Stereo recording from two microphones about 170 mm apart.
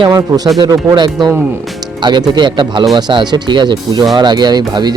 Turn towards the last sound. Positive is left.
turn(degrees=-25)  # may be behind; listen again after turning